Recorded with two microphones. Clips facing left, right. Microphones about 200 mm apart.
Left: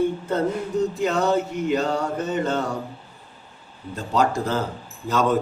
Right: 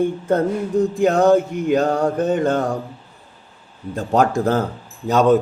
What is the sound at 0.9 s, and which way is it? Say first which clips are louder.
Mantra: right 9 dB; 50° right (ahead or behind).